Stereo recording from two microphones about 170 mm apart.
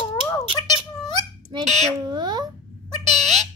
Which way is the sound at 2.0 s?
25° right (ahead or behind).